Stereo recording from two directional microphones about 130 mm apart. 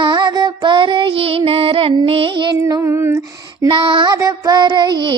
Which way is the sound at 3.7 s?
35° right (ahead or behind).